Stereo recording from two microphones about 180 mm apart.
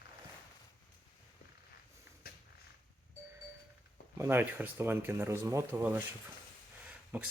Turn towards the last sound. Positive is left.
turn(degrees=-10)  # may be behind; listen again after turning